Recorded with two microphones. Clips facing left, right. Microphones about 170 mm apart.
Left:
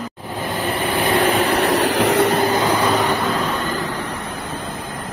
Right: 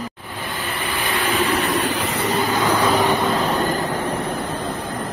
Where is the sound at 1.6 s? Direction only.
80° left.